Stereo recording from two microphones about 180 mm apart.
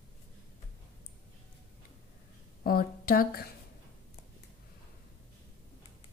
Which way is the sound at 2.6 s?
55° left (ahead or behind).